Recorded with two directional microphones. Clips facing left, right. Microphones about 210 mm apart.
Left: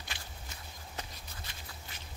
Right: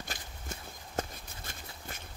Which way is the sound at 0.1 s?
50° right (ahead or behind).